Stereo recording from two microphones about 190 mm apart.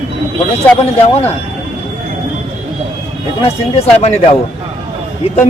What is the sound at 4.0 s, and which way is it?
Speech, 35° left (ahead or behind).